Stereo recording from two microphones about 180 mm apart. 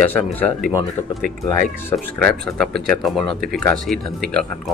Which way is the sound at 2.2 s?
Centre (ahead or behind).